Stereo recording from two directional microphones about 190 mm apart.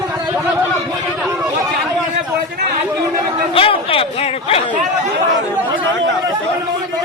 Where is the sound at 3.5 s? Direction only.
30° left (ahead or behind).